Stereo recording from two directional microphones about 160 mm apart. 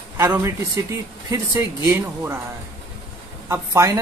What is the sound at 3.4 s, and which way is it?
Speech, 15° right (ahead or behind).